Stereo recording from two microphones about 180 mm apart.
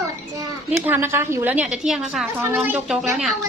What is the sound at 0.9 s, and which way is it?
A woman's voice, 15° right (ahead or behind).